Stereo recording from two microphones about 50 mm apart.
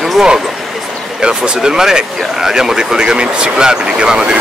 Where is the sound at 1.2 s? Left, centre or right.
Centre.